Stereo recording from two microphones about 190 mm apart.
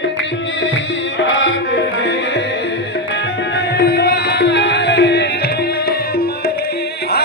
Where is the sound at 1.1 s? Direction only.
75° left (ahead or behind).